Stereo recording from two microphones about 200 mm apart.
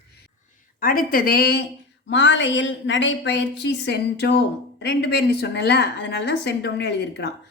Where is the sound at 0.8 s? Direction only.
45° left (ahead or behind).